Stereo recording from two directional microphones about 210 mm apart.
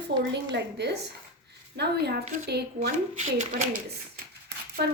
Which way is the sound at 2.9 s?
35° right (ahead or behind).